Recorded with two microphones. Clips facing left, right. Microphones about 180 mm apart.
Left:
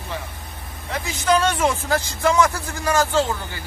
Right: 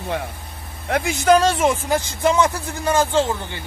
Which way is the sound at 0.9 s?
55° right (ahead or behind).